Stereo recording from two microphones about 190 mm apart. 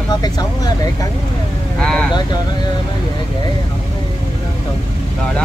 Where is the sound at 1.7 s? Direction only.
5° left (ahead or behind).